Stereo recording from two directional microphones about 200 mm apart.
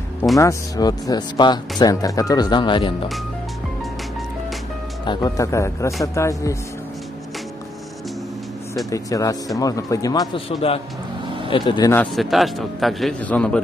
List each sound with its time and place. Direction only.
0.4 s speech: 15° left (ahead or behind)
5.0 s speech: 20° left (ahead or behind)
8.9 s speech: 15° left (ahead or behind)
11.9 s a man's voice: 5° left (ahead or behind)